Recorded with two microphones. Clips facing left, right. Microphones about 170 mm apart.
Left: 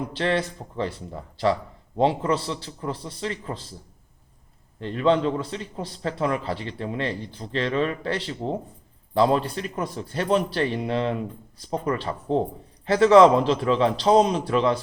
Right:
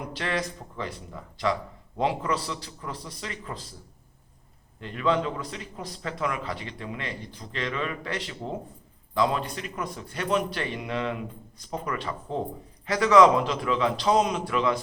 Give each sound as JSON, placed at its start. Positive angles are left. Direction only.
{"t": 0.1, "sound": "a man's voice", "side_deg": 30}
{"t": 4.8, "sound": "a man's voice", "side_deg": 30}